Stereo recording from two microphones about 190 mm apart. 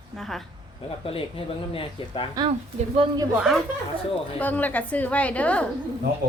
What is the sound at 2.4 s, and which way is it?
Speech, 20° right (ahead or behind).